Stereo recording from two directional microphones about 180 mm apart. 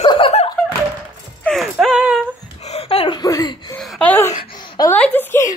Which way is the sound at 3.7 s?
5° left (ahead or behind).